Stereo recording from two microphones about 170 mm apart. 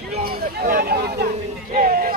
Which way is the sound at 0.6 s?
65° right (ahead or behind).